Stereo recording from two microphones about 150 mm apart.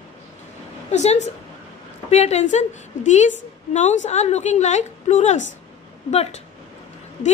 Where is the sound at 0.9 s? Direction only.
50° left (ahead or behind).